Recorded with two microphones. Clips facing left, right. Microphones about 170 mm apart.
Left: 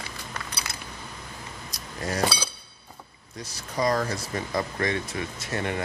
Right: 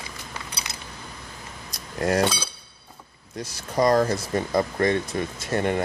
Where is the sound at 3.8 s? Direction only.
45° right (ahead or behind).